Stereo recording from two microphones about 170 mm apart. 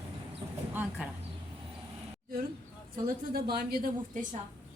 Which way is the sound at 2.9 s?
60° right (ahead or behind).